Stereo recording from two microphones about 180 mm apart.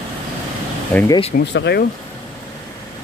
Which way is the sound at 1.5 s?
70° left (ahead or behind).